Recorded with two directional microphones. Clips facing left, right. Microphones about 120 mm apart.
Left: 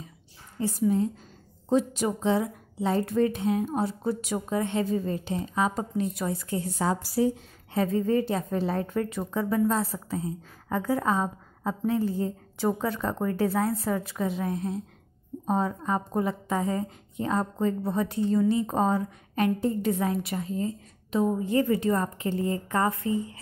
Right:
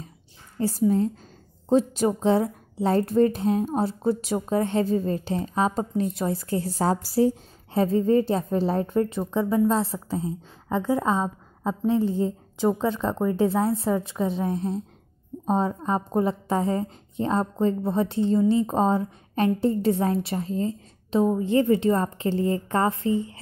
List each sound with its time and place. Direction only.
0.6 s a woman's voice: 35° right (ahead or behind)